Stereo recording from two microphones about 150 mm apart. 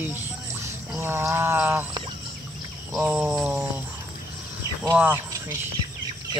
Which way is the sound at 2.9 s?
5° right (ahead or behind).